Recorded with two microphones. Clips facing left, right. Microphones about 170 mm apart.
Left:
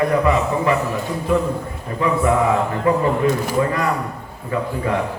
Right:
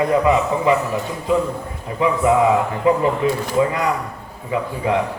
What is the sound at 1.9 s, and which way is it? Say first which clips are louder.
A man's voice: right 1 dB; 15° right (ahead or behind).